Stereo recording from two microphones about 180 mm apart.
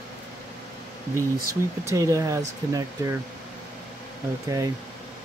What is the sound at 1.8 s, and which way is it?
Speech, 15° right (ahead or behind).